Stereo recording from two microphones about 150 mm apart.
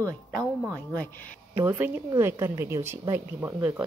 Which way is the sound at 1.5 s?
15° right (ahead or behind).